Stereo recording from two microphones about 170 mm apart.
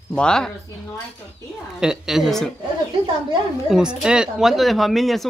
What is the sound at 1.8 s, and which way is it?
Speech, centre (ahead or behind).